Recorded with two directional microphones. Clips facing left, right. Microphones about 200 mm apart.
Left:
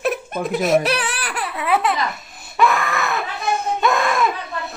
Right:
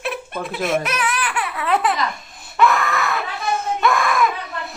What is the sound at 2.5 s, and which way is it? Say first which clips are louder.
Baby cry: right 1 dB; 15° left (ahead or behind).